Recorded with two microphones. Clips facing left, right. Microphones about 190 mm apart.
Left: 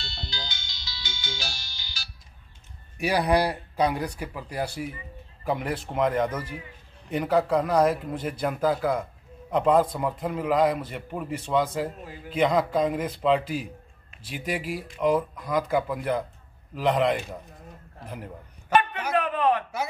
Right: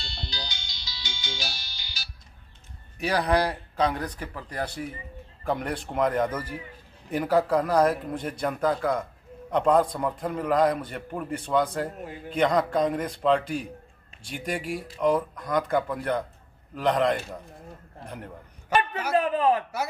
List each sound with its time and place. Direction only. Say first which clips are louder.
0.3 s music: even; 15° right (ahead or behind)
3.0 s a man's voice: left 1 dB; 10° left (ahead or behind)
19.1 s chuckle: right 1 dB; 30° right (ahead or behind)